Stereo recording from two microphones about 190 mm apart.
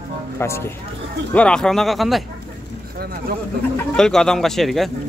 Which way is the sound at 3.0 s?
50° right (ahead or behind).